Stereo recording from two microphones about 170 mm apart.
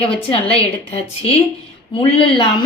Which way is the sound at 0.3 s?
35° left (ahead or behind).